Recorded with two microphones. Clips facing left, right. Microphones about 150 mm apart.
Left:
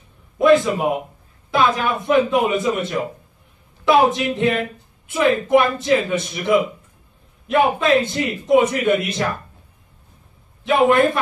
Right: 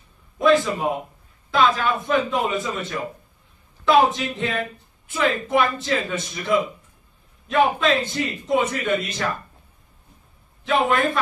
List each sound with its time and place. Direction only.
0.5 s a man's voice: 20° left (ahead or behind)
4.2 s a man's voice: 20° left (ahead or behind)
10.6 s a man's voice: 20° left (ahead or behind)